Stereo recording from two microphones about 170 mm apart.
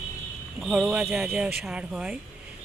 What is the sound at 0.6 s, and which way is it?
Speech, 5° right (ahead or behind).